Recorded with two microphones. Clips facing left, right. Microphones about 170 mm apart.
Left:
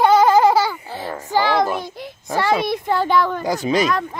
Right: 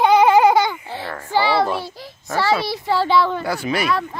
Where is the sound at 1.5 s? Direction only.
15° left (ahead or behind).